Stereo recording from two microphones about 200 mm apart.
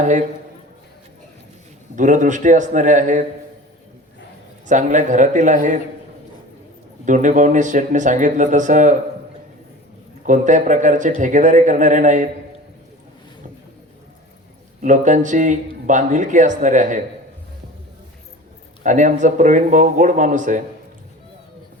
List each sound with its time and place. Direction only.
0.0 s a man's voice: 40° right (ahead or behind)
2.0 s speech: 40° right (ahead or behind)
4.6 s speech: 40° right (ahead or behind)
7.0 s speech: 40° right (ahead or behind)
10.2 s speech: 40° right (ahead or behind)
14.8 s speech: 40° right (ahead or behind)
18.8 s speech: 40° right (ahead or behind)